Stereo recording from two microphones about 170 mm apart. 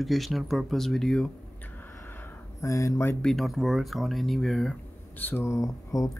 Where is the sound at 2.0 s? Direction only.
15° left (ahead or behind).